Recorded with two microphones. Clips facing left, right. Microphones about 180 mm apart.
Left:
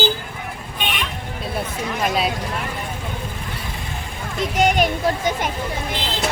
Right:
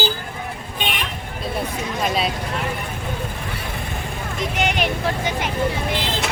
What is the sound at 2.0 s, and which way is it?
Speech, centre (ahead or behind).